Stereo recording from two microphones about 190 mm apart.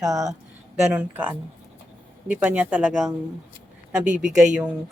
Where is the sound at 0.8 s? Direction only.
10° right (ahead or behind).